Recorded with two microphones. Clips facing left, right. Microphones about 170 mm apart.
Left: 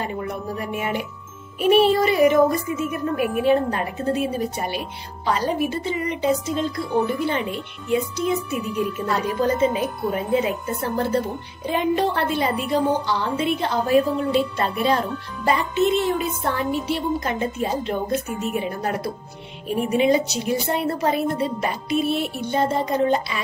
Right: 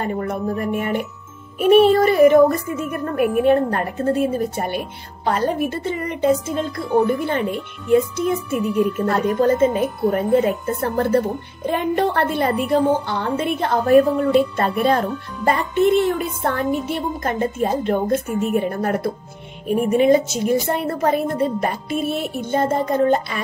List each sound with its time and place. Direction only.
0.0 s speech: 50° right (ahead or behind)